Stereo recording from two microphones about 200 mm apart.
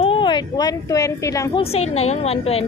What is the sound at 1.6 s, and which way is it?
A woman's voice, 30° left (ahead or behind).